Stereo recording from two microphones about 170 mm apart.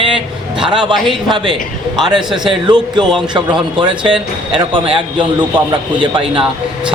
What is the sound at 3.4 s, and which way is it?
A man's voice, 25° right (ahead or behind).